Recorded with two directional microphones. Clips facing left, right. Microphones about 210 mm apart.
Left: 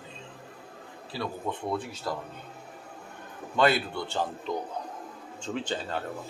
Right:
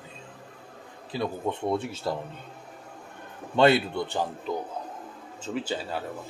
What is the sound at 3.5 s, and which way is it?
Speech, 25° right (ahead or behind).